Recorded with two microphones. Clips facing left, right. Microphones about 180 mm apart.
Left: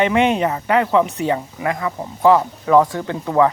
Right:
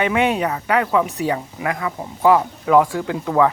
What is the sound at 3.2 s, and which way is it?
Speech, 15° left (ahead or behind).